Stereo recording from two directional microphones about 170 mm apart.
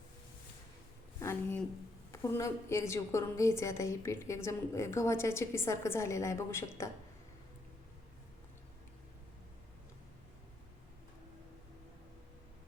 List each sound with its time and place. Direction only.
1.2 s a woman's voice: 15° left (ahead or behind)